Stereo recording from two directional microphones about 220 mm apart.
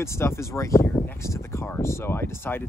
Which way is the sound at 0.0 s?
10° left (ahead or behind).